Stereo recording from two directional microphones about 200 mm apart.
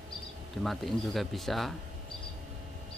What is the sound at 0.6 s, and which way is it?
Speech, centre (ahead or behind).